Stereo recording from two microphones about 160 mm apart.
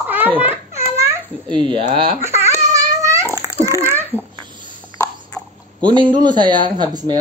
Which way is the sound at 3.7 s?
15° right (ahead or behind).